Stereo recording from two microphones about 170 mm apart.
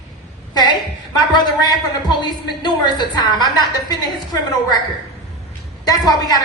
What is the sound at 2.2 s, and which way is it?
A woman's voice, 25° left (ahead or behind).